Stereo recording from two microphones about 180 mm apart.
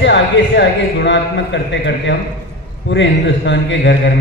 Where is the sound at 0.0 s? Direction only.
80° left.